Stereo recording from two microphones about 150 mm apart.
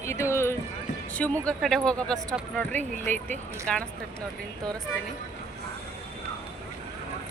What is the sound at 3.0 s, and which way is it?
Speech, 55° right (ahead or behind).